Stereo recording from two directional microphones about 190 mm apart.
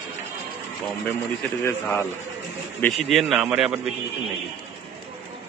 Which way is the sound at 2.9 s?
Centre (ahead or behind).